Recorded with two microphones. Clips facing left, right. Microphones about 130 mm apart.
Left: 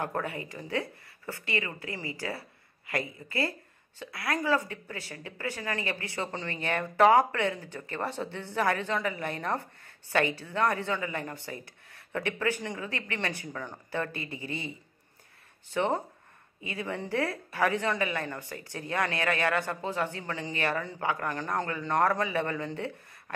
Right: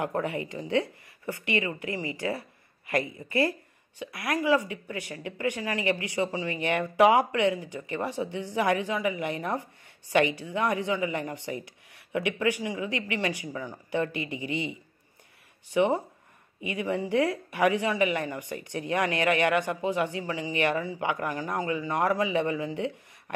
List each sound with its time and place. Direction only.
0.0 s speech: 20° right (ahead or behind)